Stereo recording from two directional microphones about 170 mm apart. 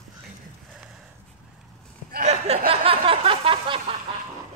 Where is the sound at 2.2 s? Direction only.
40° right (ahead or behind).